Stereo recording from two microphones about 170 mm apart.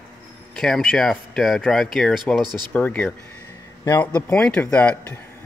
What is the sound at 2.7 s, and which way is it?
A man's voice, 10° left (ahead or behind).